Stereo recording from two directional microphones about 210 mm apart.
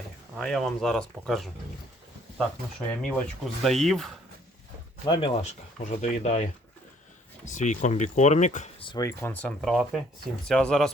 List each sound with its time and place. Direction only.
0.3 s speech: centre (ahead or behind)
3.0 s speech: centre (ahead or behind)
5.0 s speech: 20° left (ahead or behind)
8.9 s speech: 15° left (ahead or behind)